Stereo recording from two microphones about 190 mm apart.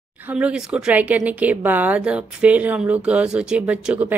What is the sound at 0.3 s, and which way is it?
A woman's voice, 5° right (ahead or behind).